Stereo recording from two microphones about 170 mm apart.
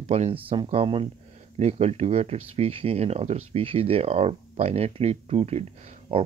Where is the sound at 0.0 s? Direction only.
40° right (ahead or behind).